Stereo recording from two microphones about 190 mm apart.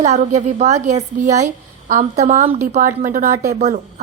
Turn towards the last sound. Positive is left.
turn(degrees=-40)  # may be behind; listen again after turning